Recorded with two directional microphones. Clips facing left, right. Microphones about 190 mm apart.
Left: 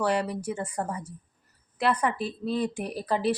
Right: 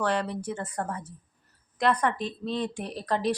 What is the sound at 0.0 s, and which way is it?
A woman's voice, 10° left (ahead or behind).